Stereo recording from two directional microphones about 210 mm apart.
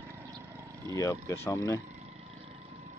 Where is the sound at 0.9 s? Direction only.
15° left (ahead or behind).